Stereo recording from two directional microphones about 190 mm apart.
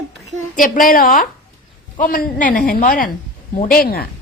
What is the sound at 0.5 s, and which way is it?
Speech, 45° left (ahead or behind).